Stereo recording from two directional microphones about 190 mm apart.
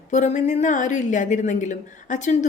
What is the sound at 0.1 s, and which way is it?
A woman's voice, 40° left (ahead or behind).